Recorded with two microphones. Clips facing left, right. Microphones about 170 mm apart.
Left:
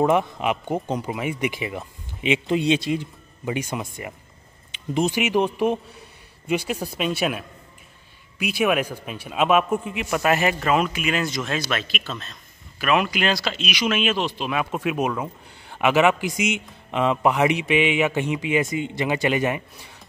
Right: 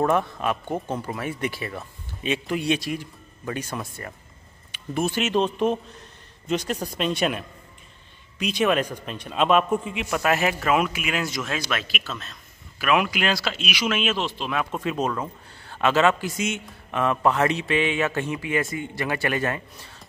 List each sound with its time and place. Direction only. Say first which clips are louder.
0.0 s a man's voice: left 2 dB; 15° left (ahead or behind)